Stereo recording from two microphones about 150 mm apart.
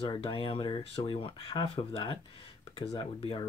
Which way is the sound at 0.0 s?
40° left (ahead or behind).